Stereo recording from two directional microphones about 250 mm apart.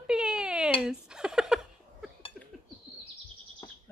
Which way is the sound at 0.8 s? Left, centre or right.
Centre.